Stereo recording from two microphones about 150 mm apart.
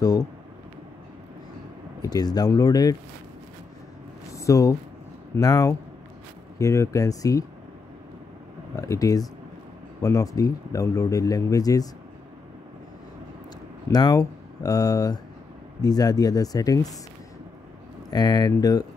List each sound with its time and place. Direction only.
0.0 s speech: 25° left (ahead or behind)
2.0 s speech: 25° left (ahead or behind)
4.3 s a sound: 20° left (ahead or behind)
5.4 s speech: 25° left (ahead or behind)
8.7 s speech: 20° left (ahead or behind)
13.8 s speech: 25° left (ahead or behind)
18.1 s speech: 25° left (ahead or behind)